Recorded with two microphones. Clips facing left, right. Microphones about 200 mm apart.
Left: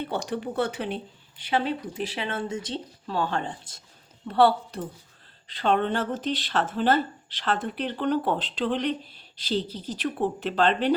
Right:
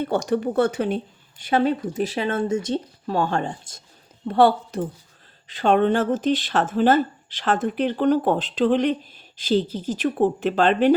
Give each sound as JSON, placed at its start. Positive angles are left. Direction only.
{"t": 0.0, "sound": "speech", "side_deg": -45}